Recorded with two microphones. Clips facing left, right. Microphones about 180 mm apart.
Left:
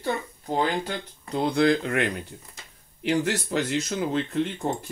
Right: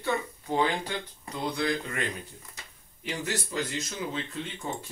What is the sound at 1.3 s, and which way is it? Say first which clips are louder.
Speech: left 8 dB; 65° left (ahead or behind).